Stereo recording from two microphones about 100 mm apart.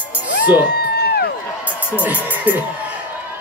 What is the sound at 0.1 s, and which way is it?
Music, 15° right (ahead or behind).